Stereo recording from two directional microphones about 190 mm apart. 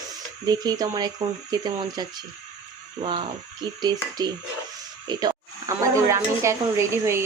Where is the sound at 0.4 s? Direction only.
20° right (ahead or behind).